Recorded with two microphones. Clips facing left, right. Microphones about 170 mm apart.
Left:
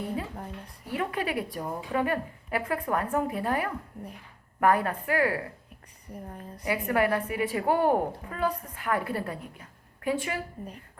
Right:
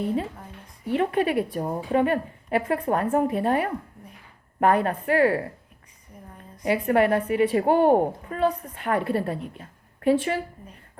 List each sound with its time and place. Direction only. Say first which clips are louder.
0.9 s a woman's voice: right 8 dB; 25° right (ahead or behind)
6.7 s a woman's voice: right 5 dB; 30° right (ahead or behind)